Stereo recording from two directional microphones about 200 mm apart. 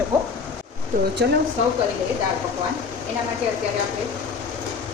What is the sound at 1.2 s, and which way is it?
Speech, 55° right (ahead or behind).